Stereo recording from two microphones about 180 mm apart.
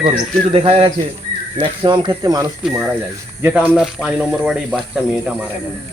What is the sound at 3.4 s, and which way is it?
Speech, 5° right (ahead or behind).